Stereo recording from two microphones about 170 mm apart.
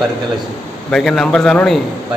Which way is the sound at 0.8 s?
Centre (ahead or behind).